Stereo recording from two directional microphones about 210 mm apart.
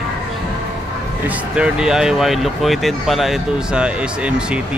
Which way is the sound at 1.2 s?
5° right (ahead or behind).